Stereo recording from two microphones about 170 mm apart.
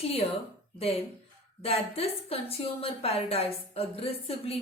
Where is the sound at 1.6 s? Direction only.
35° left (ahead or behind).